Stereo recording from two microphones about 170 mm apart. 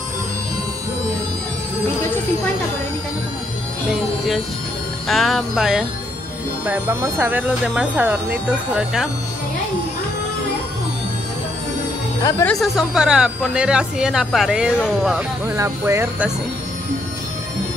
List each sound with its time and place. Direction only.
5.0 s speech: centre (ahead or behind)
12.2 s speech: 20° left (ahead or behind)
12.4 s speech: centre (ahead or behind)
15.5 s speech: 15° right (ahead or behind)